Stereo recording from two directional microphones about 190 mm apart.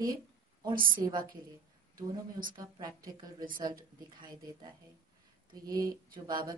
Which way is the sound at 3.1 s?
20° right (ahead or behind).